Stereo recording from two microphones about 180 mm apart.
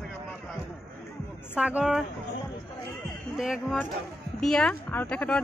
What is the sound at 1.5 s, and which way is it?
Speech, 5° right (ahead or behind).